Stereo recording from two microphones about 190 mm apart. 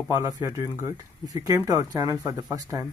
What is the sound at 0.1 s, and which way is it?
Speech, 20° right (ahead or behind).